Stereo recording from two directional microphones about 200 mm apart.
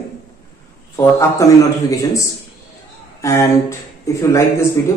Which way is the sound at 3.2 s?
15° left (ahead or behind).